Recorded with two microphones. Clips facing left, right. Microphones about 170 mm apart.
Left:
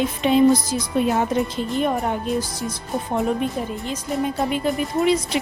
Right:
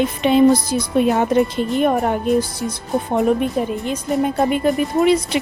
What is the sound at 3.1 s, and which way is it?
A woman's voice, 65° right (ahead or behind).